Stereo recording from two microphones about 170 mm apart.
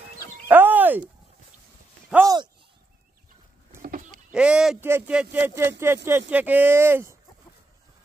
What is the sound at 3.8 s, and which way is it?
Sheep, 55° right (ahead or behind).